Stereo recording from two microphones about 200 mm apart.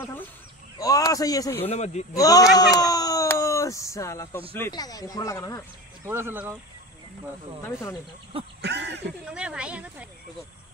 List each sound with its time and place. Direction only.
0.7 s speech: 15° left (ahead or behind)
1.7 s speech: 35° left (ahead or behind)
2.1 s speech: 20° left (ahead or behind)
6.0 s speech: 10° right (ahead or behind)
8.5 s a sound: 60° right (ahead or behind)
9.3 s speech: 5° right (ahead or behind)